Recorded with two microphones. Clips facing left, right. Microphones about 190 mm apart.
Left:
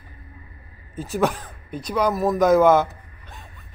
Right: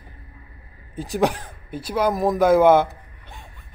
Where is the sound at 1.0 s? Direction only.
15° right (ahead or behind).